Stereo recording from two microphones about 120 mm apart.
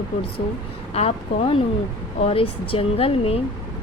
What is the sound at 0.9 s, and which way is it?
Speech, 55° left (ahead or behind).